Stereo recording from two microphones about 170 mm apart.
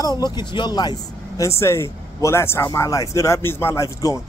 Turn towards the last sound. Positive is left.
turn(degrees=15)  # may be behind; listen again after turning